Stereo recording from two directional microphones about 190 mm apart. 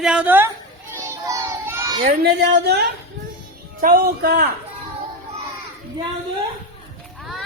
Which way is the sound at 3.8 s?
50° right (ahead or behind).